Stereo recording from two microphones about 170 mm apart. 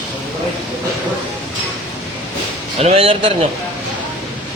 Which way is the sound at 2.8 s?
35° right (ahead or behind).